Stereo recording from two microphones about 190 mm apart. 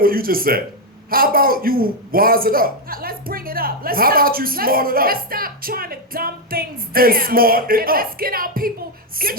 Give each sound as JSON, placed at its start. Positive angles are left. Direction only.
{"t": 0.0, "sound": "a man's voice", "side_deg": -50}